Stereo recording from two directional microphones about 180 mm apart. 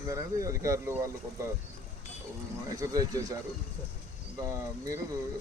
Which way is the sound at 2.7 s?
20° right (ahead or behind).